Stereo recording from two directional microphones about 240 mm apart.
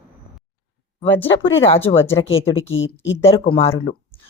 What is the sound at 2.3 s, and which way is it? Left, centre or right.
Speech, left.